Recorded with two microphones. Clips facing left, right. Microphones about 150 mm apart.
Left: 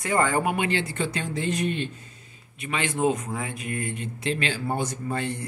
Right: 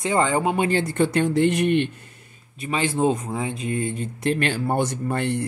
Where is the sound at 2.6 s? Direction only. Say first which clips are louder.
Right 4 dB; 35° right (ahead or behind).